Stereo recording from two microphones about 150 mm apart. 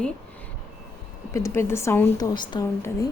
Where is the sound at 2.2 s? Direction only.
30° left (ahead or behind).